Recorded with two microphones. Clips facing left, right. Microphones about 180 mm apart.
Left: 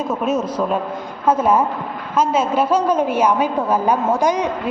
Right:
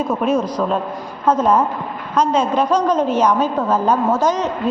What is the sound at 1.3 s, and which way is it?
A woman's voice, 10° left (ahead or behind).